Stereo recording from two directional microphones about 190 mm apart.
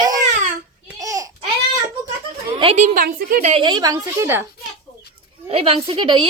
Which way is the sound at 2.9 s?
50° right (ahead or behind).